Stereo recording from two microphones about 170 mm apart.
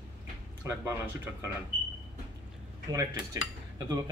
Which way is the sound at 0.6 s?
15° right (ahead or behind).